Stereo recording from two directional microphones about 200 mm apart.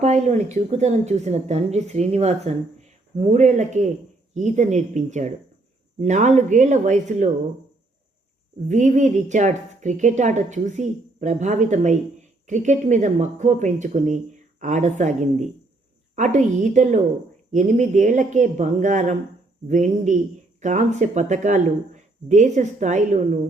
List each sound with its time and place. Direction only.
0.0 s a woman's voice: 35° right (ahead or behind)
8.6 s a woman's voice: 35° right (ahead or behind)